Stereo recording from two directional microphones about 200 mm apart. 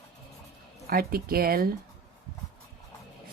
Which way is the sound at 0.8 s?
50° right (ahead or behind).